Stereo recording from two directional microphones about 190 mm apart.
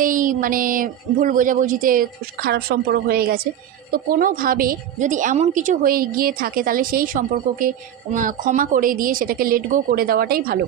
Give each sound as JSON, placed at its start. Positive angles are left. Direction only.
{"t": 0.0, "sound": "a woman's voice", "side_deg": -45}